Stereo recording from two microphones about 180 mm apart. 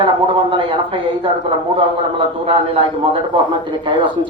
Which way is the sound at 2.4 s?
30° right (ahead or behind).